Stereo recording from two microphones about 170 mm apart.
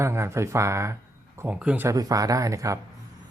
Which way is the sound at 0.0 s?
15° right (ahead or behind).